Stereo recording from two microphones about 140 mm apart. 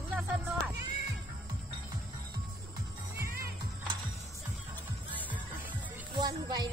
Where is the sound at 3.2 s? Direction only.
90° right.